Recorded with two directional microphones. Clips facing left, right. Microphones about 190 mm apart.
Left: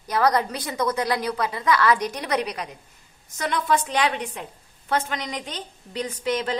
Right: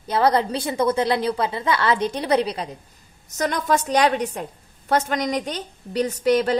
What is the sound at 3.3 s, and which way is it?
A woman's voice, 45° right (ahead or behind).